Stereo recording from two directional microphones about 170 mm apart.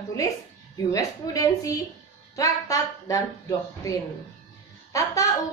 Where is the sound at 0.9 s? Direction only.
20° left (ahead or behind).